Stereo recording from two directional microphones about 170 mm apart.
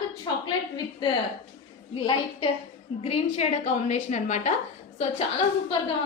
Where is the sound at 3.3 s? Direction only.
45° left (ahead or behind).